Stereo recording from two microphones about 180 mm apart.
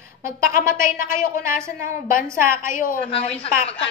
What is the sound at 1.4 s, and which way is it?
Speech, 15° right (ahead or behind).